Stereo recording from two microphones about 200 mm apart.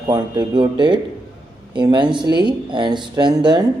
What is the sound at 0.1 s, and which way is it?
Speech, 20° right (ahead or behind).